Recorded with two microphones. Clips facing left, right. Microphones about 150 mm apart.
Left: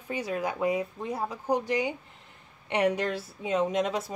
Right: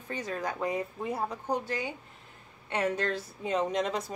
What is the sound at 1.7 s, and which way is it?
A woman's voice, 15° left (ahead or behind).